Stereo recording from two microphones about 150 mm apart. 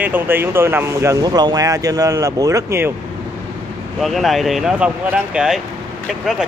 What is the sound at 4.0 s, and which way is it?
Speech, centre (ahead or behind).